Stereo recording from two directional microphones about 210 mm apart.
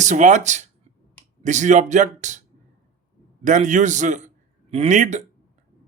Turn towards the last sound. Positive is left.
turn(degrees=-35)  # may be behind; listen again after turning